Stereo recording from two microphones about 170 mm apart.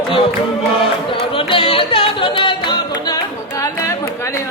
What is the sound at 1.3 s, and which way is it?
Music, 30° left (ahead or behind).